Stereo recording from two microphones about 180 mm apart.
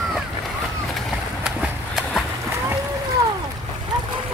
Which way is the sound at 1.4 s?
Centre (ahead or behind).